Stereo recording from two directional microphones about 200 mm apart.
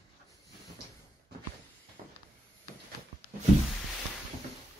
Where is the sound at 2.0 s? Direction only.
35° right (ahead or behind).